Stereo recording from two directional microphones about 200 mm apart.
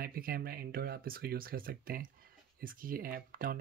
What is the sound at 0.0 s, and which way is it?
Speech, 45° right (ahead or behind).